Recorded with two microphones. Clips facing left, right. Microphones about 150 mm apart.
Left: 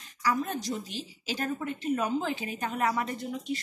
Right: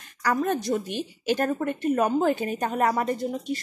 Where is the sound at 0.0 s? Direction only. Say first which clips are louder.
Right 4 dB; 60° right (ahead or behind).